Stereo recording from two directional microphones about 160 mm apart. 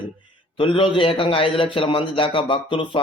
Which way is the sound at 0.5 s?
35° left (ahead or behind).